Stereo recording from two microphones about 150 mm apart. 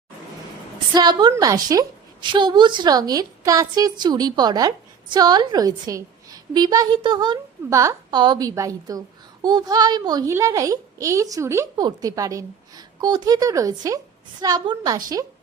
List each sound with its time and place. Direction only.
0.9 s a child's voice: 30° right (ahead or behind)